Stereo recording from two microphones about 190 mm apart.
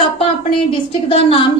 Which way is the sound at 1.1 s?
30° left (ahead or behind).